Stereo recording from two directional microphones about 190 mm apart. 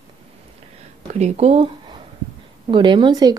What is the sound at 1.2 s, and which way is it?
Speech, 35° right (ahead or behind).